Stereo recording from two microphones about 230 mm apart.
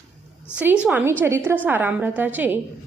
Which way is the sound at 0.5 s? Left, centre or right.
Centre.